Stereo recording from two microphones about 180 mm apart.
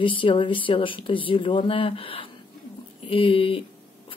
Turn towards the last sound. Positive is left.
turn(degrees=30)  # may be behind; listen again after turning